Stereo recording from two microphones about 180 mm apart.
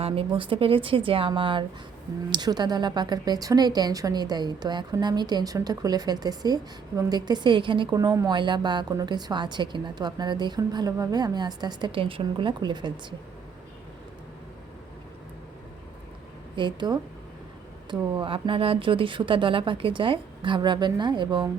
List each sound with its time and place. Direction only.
0.0 s a woman's voice: 30° right (ahead or behind)
16.6 s a woman's voice: 25° right (ahead or behind)